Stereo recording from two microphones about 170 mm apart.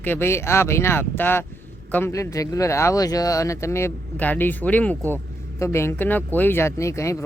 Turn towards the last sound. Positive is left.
turn(degrees=15)  # may be behind; listen again after turning